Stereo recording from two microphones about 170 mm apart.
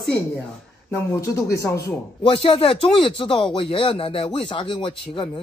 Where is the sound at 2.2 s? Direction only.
30° left (ahead or behind).